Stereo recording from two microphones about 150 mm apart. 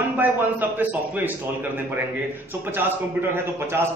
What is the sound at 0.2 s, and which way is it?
A man's voice, 10° right (ahead or behind).